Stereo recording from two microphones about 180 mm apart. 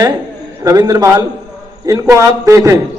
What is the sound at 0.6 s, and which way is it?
A man's voice, 20° right (ahead or behind).